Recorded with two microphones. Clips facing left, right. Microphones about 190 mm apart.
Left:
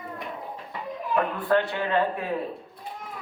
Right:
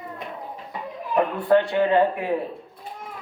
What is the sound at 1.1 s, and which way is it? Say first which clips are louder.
A man's voice: right 5 dB; 20° right (ahead or behind).